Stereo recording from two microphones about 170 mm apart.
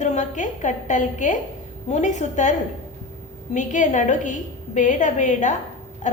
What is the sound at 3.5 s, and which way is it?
A woman's voice, 45° left (ahead or behind).